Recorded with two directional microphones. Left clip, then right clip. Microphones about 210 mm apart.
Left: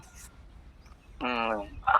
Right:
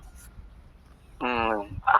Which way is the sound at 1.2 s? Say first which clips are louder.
Right 3 dB; 30° right (ahead or behind).